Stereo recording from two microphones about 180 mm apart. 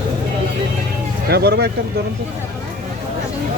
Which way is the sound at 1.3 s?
65° right (ahead or behind).